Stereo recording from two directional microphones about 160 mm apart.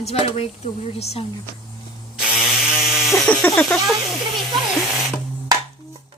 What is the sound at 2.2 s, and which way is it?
Electric toothbrush, 5° right (ahead or behind).